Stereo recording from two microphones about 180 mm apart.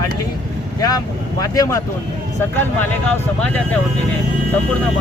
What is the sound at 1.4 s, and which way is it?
Speech, 20° left (ahead or behind).